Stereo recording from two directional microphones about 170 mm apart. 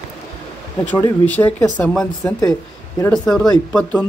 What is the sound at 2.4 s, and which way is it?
Speech, 20° left (ahead or behind).